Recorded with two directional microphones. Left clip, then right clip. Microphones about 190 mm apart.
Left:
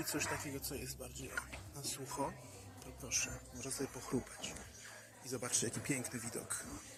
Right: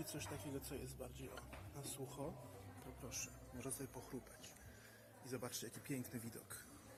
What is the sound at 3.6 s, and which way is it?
Speech, 15° right (ahead or behind).